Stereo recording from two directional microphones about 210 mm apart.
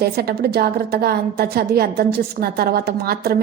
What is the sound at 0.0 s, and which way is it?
A woman's voice, 50° right (ahead or behind).